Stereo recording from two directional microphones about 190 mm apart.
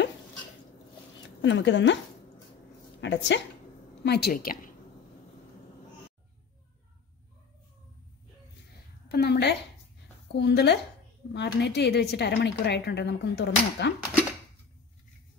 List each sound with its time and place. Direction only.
1.4 s speech: 70° left (ahead or behind)
3.0 s a woman's voice: 65° left (ahead or behind); by 4.6 s 50° left (ahead or behind)
9.1 s a woman's voice: 60° left (ahead or behind)